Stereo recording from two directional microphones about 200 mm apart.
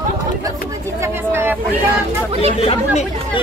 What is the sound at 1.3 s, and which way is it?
Speech, 10° right (ahead or behind).